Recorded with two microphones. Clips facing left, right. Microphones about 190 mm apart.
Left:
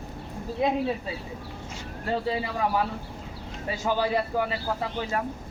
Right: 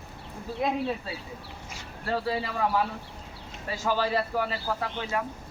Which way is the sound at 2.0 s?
20° left (ahead or behind).